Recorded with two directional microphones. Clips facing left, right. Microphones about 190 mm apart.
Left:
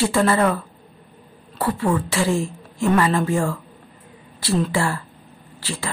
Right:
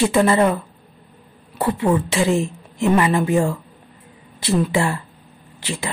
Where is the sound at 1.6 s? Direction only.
20° right (ahead or behind).